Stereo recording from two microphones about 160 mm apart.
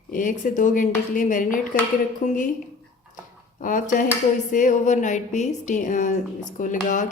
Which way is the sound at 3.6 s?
55° left (ahead or behind).